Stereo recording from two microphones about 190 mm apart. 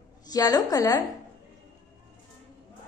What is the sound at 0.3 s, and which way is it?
Speech, 20° left (ahead or behind).